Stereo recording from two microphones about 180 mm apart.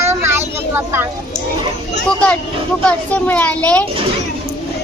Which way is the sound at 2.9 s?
10° left (ahead or behind).